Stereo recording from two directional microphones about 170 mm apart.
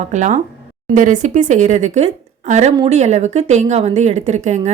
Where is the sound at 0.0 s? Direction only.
45° right (ahead or behind).